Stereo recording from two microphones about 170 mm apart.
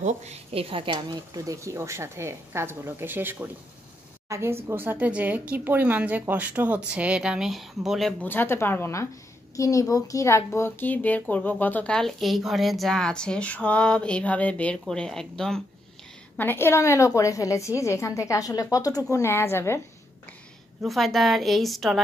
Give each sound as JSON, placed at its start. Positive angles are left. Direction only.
{"t": 0.0, "sound": "a woman's voice", "side_deg": -40}
{"t": 8.3, "sound": "a woman's voice", "side_deg": 15}
{"t": 20.8, "sound": "a woman's voice", "side_deg": 0}